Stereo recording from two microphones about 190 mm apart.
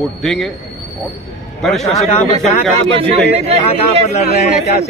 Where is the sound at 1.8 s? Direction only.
35° left (ahead or behind).